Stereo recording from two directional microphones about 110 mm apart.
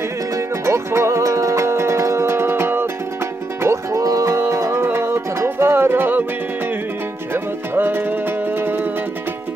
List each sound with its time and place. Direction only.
0.7 s music: 25° right (ahead or behind)
7.7 s music: 20° right (ahead or behind)